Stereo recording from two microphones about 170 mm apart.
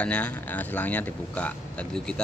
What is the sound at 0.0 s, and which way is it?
A man's voice, 5° left (ahead or behind).